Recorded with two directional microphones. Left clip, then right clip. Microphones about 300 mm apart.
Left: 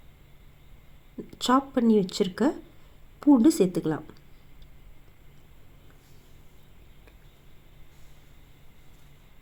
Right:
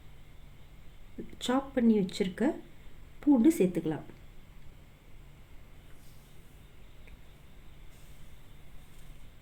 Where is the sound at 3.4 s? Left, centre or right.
Centre.